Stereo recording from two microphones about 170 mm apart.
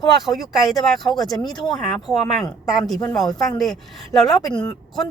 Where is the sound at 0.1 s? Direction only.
Centre (ahead or behind).